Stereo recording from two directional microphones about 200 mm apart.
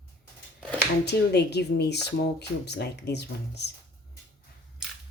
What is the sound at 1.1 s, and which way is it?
Speech, 55° left (ahead or behind).